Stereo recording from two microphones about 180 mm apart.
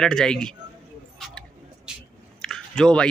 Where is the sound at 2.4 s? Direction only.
5° left (ahead or behind).